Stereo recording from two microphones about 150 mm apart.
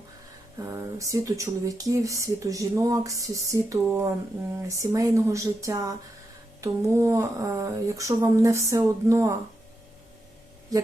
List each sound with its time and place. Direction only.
0.7 s speech: 20° right (ahead or behind)
10.7 s speech: 25° right (ahead or behind)